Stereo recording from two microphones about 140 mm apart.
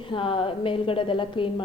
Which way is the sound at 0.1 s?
40° left (ahead or behind).